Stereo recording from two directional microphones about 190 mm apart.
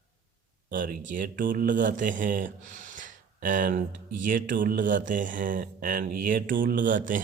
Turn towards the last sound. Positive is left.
turn(degrees=-45)  # may be behind; listen again after turning